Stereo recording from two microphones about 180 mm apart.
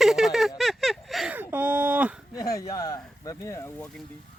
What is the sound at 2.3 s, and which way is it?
Speech, 20° left (ahead or behind).